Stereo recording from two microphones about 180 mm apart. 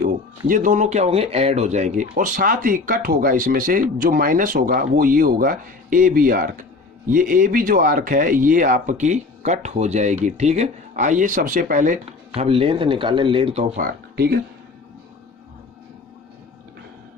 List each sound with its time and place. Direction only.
0.0 s speech: 50° right (ahead or behind); by 13.7 s 30° right (ahead or behind)
13.7 s speech: 55° right (ahead or behind)